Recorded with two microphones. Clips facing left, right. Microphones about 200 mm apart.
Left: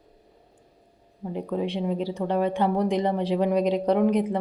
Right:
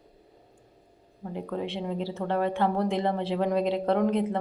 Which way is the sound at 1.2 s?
15° left (ahead or behind).